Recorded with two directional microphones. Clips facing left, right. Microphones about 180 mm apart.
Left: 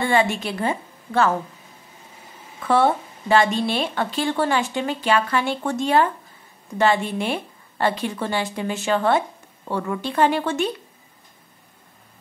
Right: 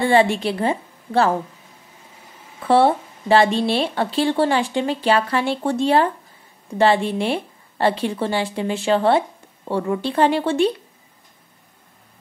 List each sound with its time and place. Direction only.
0.0 s a woman's voice: 35° right (ahead or behind)
2.6 s speech: 30° right (ahead or behind)